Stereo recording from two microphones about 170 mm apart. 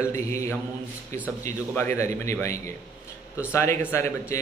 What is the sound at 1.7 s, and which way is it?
A man's voice, 15° left (ahead or behind).